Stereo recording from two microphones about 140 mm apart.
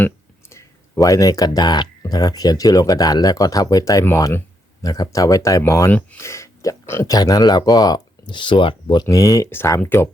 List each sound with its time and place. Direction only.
0.5 s speech: 25° left (ahead or behind)